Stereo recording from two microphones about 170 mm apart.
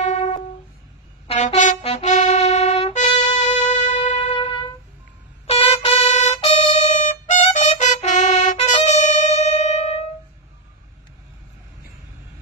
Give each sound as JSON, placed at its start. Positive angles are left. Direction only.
{"t": 0.0, "sound": "music", "side_deg": 45}
{"t": 4.4, "sound": "music", "side_deg": 30}
{"t": 5.5, "sound": "a sound", "side_deg": 40}
{"t": 6.8, "sound": "music", "side_deg": 45}